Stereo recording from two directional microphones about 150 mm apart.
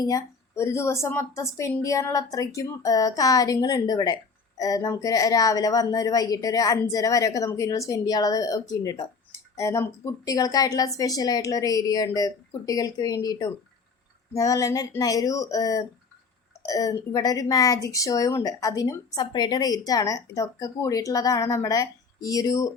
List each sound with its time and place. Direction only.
0.0 s speech: 20° left (ahead or behind)